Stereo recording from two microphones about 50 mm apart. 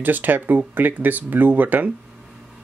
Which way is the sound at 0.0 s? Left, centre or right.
Right.